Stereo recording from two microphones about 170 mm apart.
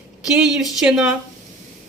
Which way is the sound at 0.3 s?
5° right (ahead or behind).